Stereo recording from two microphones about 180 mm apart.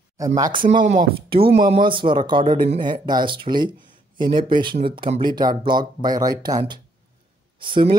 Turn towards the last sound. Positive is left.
turn(degrees=-25)  # may be behind; listen again after turning